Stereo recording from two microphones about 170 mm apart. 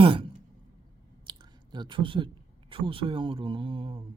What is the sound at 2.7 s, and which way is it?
Speech, 30° right (ahead or behind).